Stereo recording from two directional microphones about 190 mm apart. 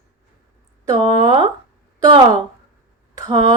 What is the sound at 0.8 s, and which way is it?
Speech, 20° right (ahead or behind).